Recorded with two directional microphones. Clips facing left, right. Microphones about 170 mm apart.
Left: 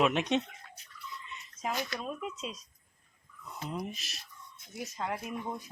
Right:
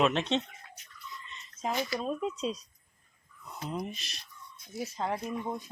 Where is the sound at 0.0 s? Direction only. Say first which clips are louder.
Even; 10° left (ahead or behind).